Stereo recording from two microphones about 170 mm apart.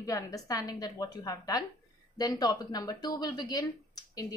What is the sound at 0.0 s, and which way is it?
Speech, 20° left (ahead or behind).